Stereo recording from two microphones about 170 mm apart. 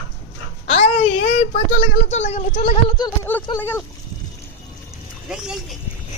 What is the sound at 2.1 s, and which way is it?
Speech, 40° left (ahead or behind).